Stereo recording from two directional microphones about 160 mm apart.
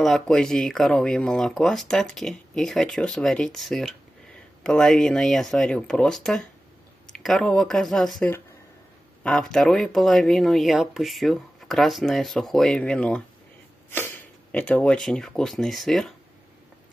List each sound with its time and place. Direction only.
0.0 s speech: centre (ahead or behind)